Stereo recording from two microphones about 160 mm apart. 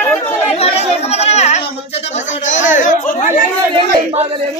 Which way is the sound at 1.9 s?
45° left (ahead or behind).